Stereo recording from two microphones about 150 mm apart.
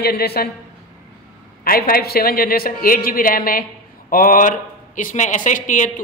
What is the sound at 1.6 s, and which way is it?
A man's voice, 75° left (ahead or behind).